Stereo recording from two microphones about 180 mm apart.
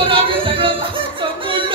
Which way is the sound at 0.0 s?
30° right (ahead or behind).